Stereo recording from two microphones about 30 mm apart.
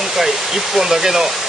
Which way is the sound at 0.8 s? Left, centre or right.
Centre.